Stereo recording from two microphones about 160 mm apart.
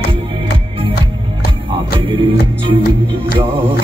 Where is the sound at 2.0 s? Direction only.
30° right (ahead or behind).